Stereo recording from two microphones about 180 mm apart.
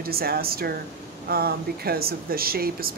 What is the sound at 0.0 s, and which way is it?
Speech, 55° right (ahead or behind).